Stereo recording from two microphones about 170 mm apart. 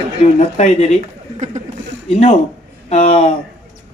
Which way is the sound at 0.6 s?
40° left (ahead or behind).